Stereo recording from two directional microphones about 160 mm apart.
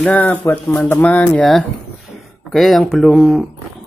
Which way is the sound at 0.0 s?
10° left (ahead or behind).